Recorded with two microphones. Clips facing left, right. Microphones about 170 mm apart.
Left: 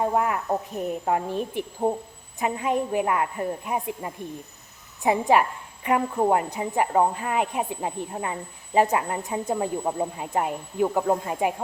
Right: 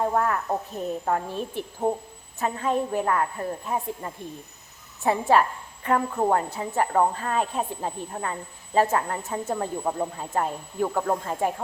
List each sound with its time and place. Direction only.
0.0 s a woman's voice: 15° left (ahead or behind)